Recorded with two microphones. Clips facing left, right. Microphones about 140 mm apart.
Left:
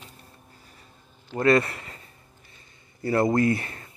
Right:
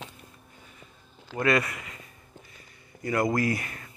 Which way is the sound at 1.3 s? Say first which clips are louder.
Left 5 dB; 30° left (ahead or behind).